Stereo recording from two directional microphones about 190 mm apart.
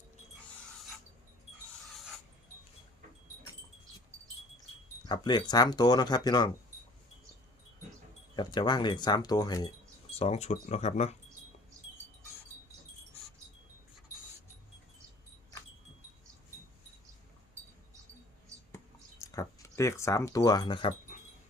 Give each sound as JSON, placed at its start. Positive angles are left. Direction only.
{"t": 5.0, "sound": "speech", "side_deg": 20}
{"t": 8.4, "sound": "speech", "side_deg": 20}
{"t": 10.2, "sound": "speech", "side_deg": 35}
{"t": 19.2, "sound": "speech", "side_deg": 15}